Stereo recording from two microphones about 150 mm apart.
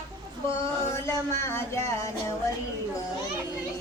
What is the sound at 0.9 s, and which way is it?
Child singing, 20° left (ahead or behind).